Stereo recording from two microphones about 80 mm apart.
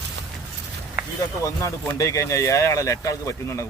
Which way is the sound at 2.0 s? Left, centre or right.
Left.